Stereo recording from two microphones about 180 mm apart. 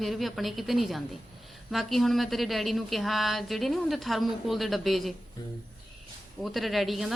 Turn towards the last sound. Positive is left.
turn(degrees=0)  # may be behind; listen again after turning